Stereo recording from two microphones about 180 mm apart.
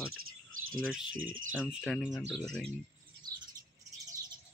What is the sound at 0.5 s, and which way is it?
Cricket, 90° right.